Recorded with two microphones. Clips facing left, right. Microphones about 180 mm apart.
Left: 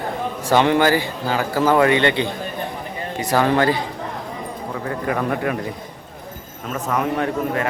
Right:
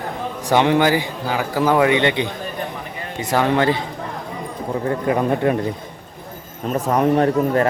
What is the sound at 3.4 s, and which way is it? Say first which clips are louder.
Speech: right 1 dB; 20° right (ahead or behind).